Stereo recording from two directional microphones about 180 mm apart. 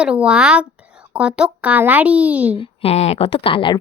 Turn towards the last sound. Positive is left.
turn(degrees=30)  # may be behind; listen again after turning